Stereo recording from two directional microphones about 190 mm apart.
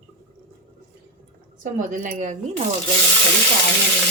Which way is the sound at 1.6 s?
45° right (ahead or behind).